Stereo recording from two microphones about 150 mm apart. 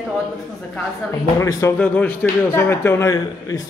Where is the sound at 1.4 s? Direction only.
20° left (ahead or behind).